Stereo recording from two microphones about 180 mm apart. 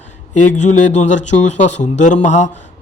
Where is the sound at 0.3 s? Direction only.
40° left (ahead or behind).